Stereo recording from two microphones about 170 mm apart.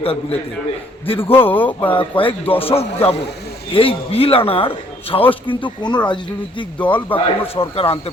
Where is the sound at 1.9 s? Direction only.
30° left (ahead or behind).